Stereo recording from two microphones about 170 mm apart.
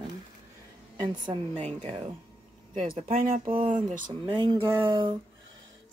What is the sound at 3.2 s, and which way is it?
Speech, 55° right (ahead or behind).